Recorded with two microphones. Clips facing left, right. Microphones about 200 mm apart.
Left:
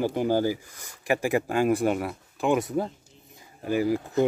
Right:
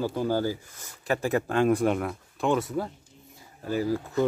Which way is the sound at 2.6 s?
15° left (ahead or behind).